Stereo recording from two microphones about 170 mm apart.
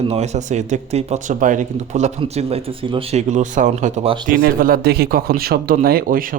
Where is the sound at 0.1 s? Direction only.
40° right (ahead or behind).